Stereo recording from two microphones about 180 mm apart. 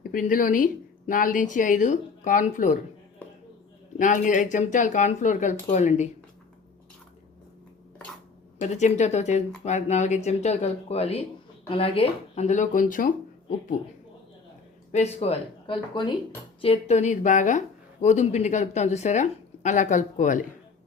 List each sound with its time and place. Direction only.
0.0 s speech: 50° left (ahead or behind)
3.9 s speech: 45° left (ahead or behind)
8.5 s a woman's voice: 40° left (ahead or behind)
14.9 s a woman's voice: 35° left (ahead or behind)